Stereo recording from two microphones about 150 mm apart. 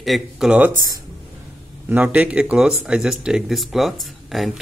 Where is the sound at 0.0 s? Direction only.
Centre (ahead or behind).